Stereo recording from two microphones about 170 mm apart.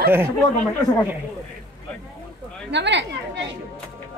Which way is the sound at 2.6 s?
90° right.